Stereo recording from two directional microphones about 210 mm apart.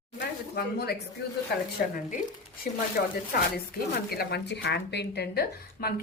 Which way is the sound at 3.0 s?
45° left (ahead or behind).